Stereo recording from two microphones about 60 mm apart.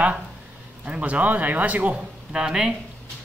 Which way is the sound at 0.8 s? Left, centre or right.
Right.